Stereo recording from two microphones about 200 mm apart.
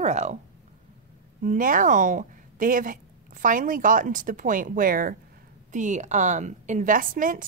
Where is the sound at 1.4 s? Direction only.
40° right (ahead or behind).